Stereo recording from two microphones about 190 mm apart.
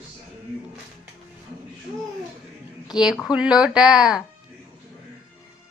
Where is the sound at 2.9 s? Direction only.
Centre (ahead or behind).